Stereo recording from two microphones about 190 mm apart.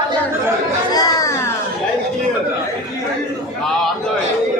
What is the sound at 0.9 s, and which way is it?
Chatter, 20° left (ahead or behind).